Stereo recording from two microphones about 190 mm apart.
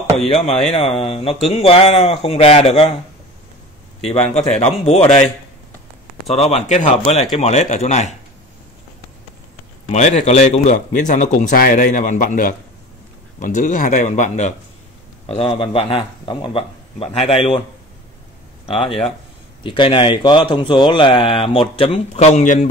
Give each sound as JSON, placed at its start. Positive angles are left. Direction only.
{"t": 0.3, "sound": "a man's voice", "side_deg": 35}
{"t": 4.0, "sound": "a man's voice", "side_deg": 35}
{"t": 6.2, "sound": "a man's voice", "side_deg": 35}
{"t": 9.8, "sound": "a man's voice", "side_deg": 40}
{"t": 19.6, "sound": "speech", "side_deg": 25}